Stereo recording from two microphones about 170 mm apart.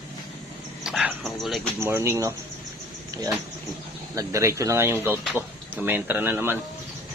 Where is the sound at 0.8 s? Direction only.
Centre (ahead or behind).